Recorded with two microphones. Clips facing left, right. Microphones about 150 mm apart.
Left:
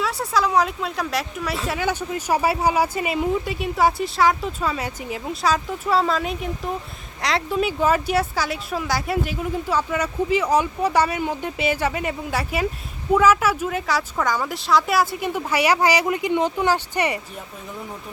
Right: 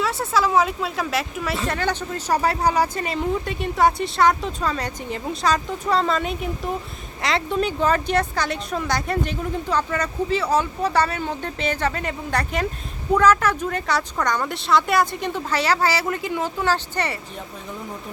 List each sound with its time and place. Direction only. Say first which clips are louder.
0.0 s speech: right 1 dB; centre (ahead or behind)